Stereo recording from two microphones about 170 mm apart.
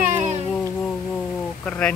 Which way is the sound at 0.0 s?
45° right (ahead or behind).